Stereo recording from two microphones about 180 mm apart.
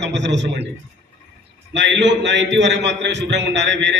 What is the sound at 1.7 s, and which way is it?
A man's voice, 75° right (ahead or behind).